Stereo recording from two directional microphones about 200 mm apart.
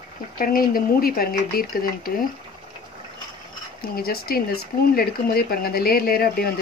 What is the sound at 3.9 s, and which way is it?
Speech, 50° left (ahead or behind).